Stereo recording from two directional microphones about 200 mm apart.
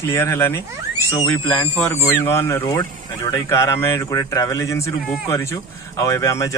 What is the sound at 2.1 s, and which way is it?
A man's voice, 10° left (ahead or behind).